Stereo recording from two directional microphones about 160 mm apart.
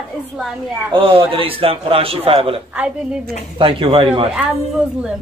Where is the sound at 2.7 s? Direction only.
5° right (ahead or behind).